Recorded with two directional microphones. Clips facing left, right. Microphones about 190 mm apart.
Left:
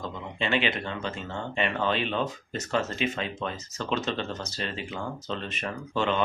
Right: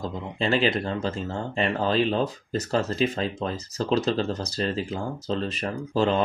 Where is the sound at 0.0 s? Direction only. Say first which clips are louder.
Right 4 dB; 35° right (ahead or behind).